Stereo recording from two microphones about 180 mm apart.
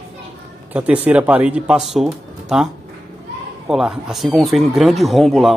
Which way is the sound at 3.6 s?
Centre (ahead or behind).